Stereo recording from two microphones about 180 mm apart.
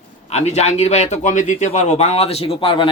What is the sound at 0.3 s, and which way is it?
A man's voice, 40° left (ahead or behind).